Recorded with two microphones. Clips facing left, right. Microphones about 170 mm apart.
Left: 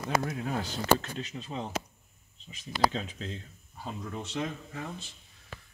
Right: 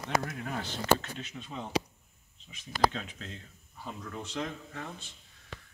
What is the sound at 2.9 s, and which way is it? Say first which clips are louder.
Speech: left 4 dB; 35° left (ahead or behind).